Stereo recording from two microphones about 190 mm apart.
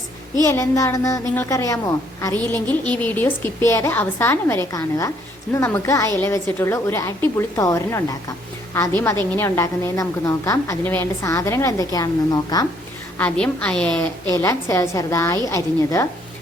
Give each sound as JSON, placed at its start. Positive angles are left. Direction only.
{"t": 0.4, "sound": "a woman's voice", "side_deg": 15}
{"t": 13.1, "sound": "a woman's voice", "side_deg": 5}